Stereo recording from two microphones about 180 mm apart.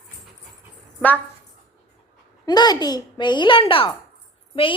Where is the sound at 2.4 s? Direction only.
20° left (ahead or behind).